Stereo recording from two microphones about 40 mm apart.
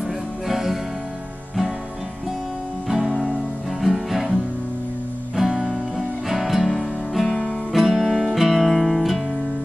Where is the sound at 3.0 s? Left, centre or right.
Centre.